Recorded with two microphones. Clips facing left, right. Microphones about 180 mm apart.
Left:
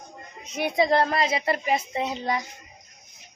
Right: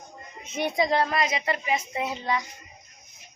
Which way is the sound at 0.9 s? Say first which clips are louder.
Left 3 dB; 45° left (ahead or behind).